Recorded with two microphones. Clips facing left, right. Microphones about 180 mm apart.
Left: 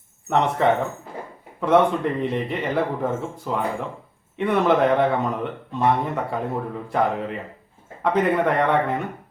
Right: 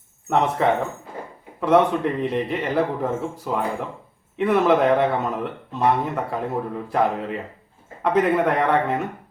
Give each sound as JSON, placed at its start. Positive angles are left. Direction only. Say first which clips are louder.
{"t": 0.3, "sound": "speech", "louder": "even", "side_deg": 0}